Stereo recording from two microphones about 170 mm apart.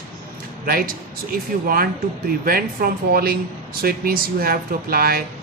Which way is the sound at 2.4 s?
60° right (ahead or behind).